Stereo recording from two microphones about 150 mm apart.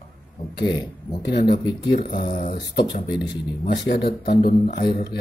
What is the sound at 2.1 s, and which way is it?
Speech, 80° left.